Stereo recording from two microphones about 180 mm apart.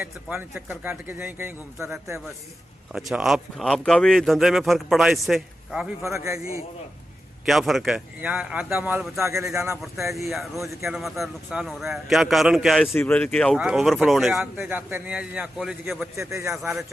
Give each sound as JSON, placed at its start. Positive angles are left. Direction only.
{"t": 0.0, "sound": "speech", "side_deg": -10}
{"t": 6.0, "sound": "speech", "side_deg": -15}
{"t": 7.4, "sound": "speech", "side_deg": 0}
{"t": 9.8, "sound": "speech", "side_deg": 0}
{"t": 16.1, "sound": "speech", "side_deg": -15}